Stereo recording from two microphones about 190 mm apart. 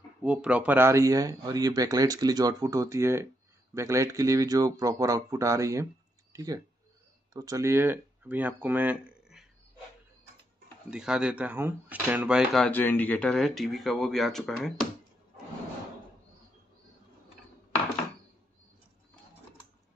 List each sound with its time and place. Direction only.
0.2 s speech: 5° right (ahead or behind)
10.9 s speech: 5° right (ahead or behind)
12.5 s speech: 5° left (ahead or behind)